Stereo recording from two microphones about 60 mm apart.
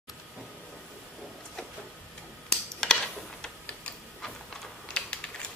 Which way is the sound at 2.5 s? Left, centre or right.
Centre.